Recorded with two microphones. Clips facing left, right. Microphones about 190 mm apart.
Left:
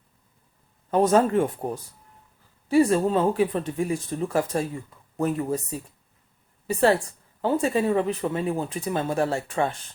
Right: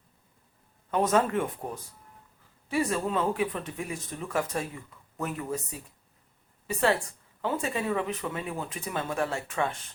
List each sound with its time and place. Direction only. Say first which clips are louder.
0.9 s speech: left 5 dB; 35° left (ahead or behind)
6.7 s speech: left 5 dB; 35° left (ahead or behind)